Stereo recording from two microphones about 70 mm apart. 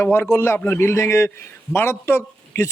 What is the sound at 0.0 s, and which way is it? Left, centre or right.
A man's voice, left.